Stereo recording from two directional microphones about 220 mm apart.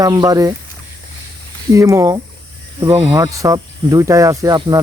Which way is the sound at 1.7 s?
15° right (ahead or behind).